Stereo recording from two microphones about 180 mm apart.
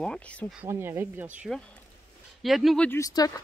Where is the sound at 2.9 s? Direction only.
20° left (ahead or behind).